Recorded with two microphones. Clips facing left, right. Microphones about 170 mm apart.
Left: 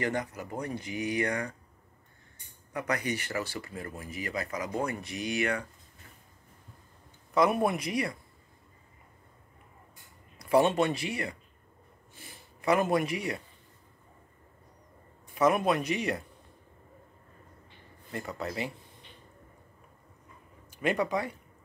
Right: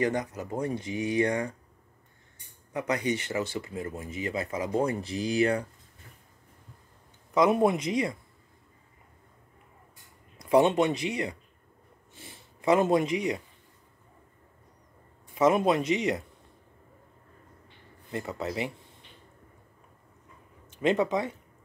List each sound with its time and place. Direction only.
0.0 s speech: 20° right (ahead or behind)
2.7 s speech: 20° right (ahead or behind)
7.3 s speech: 20° right (ahead or behind)
10.4 s speech: 20° right (ahead or behind)
15.3 s speech: 20° right (ahead or behind)
18.1 s speech: 20° right (ahead or behind)
20.7 s speech: 25° right (ahead or behind)